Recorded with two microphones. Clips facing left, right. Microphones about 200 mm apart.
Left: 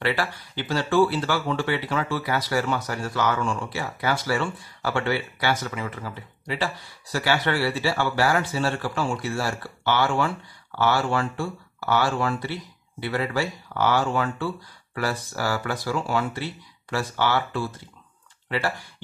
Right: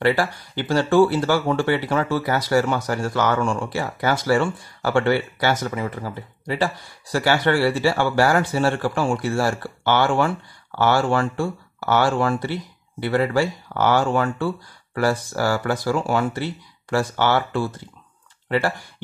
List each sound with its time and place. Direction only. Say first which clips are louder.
0.0 s speech: right 6 dB; 45° right (ahead or behind)